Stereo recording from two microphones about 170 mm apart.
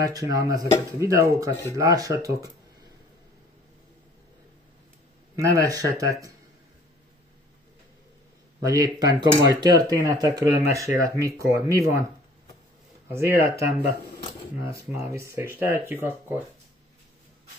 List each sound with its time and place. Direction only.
0.0 s speech: 20° right (ahead or behind)
5.3 s speech: 20° right (ahead or behind)
8.5 s speech: 20° right (ahead or behind)
13.1 s speech: 15° right (ahead or behind)
14.9 s speech: 15° right (ahead or behind)